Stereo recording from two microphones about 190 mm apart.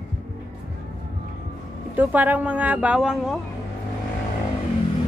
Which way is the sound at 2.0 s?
10° right (ahead or behind).